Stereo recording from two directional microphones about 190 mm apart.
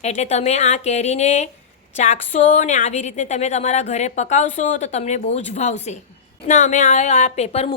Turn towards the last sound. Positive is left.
turn(degrees=35)  # may be behind; listen again after turning